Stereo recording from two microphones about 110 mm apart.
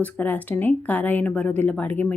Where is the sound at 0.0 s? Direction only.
15° left (ahead or behind).